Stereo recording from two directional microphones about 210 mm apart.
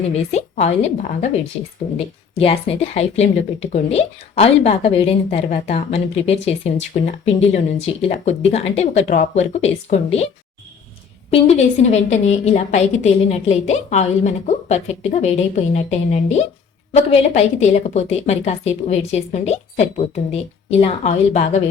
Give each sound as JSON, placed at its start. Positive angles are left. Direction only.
{"t": 0.1, "sound": "a woman's voice", "side_deg": 30}
{"t": 11.3, "sound": "a woman's voice", "side_deg": 30}